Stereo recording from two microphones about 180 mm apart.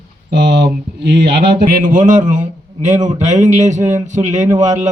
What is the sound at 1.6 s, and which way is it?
A man's voice, 45° right (ahead or behind).